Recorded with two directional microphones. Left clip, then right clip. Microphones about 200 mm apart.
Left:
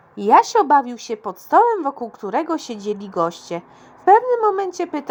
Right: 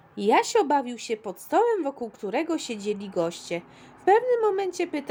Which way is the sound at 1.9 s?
35° left (ahead or behind).